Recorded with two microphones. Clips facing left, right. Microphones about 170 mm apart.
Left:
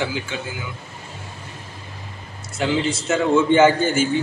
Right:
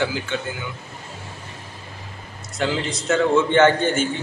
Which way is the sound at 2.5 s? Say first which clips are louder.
Left 3 dB; 5° left (ahead or behind).